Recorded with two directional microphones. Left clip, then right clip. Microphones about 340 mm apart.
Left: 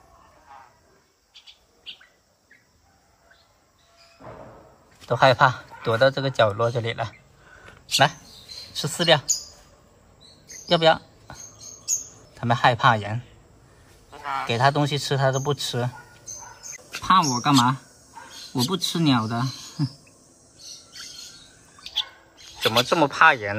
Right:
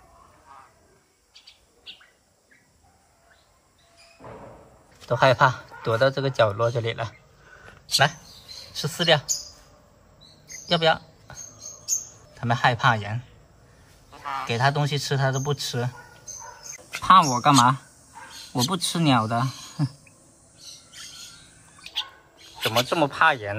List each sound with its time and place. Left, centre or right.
5.1 s a man's voice: centre
10.7 s a sound: centre
12.4 s speech: centre
14.1 s honk: left
14.5 s speech: centre
17.0 s speech: centre
22.6 s speech: centre